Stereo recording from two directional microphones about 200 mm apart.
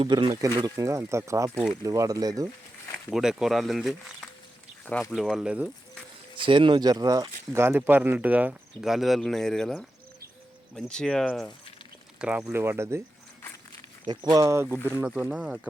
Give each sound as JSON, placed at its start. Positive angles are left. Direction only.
{"t": 0.0, "sound": "speech", "side_deg": -25}
{"t": 2.9, "sound": "speech", "side_deg": 0}
{"t": 4.9, "sound": "speech", "side_deg": 10}
{"t": 5.1, "sound": "speech", "side_deg": 0}
{"t": 6.3, "sound": "speech", "side_deg": -25}
{"t": 14.3, "sound": "speech", "side_deg": -15}